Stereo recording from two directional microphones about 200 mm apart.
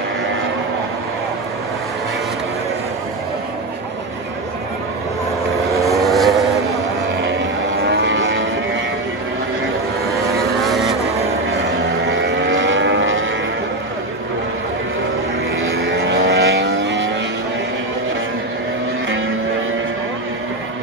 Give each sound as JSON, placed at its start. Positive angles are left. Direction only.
{"t": 5.9, "sound": "vehicle", "side_deg": 0}
{"t": 7.9, "sound": "vehicle", "side_deg": -65}
{"t": 10.6, "sound": "vehicle", "side_deg": 0}
{"t": 12.1, "sound": "vehicle", "side_deg": -60}
{"t": 15.6, "sound": "vehicle", "side_deg": -60}